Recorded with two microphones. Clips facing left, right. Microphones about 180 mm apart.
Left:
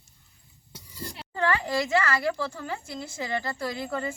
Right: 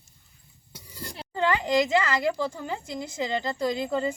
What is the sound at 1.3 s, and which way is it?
A woman's voice, 20° right (ahead or behind).